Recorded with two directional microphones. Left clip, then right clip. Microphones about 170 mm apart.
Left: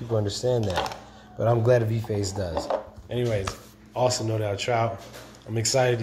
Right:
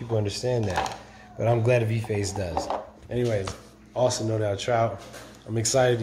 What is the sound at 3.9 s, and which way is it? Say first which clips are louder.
Speech: even; 20° right (ahead or behind).